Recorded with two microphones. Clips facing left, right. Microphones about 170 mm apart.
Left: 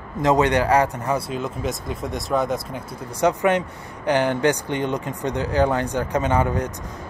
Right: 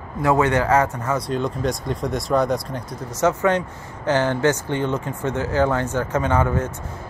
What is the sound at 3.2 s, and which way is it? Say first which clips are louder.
Speech: even; 15° left (ahead or behind).